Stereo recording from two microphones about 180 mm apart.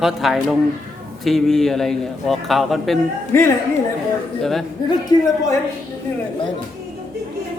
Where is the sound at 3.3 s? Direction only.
10° left (ahead or behind).